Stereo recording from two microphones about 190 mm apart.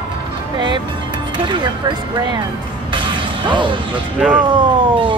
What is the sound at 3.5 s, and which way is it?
Speech, 25° right (ahead or behind).